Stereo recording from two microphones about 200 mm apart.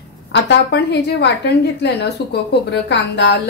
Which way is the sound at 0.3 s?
60° left (ahead or behind).